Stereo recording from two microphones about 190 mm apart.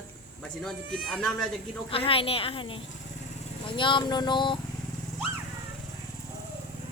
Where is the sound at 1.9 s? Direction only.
30° left (ahead or behind).